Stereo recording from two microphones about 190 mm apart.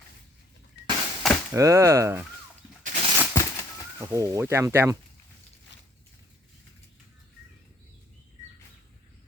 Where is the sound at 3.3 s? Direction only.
15° left (ahead or behind).